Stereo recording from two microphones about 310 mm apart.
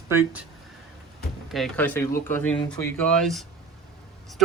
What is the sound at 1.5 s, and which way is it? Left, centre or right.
Speech, centre.